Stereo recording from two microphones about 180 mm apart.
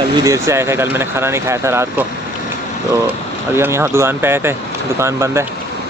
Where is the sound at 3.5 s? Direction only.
15° right (ahead or behind).